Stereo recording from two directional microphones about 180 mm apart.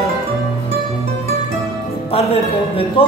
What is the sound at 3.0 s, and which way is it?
Music, 30° left (ahead or behind).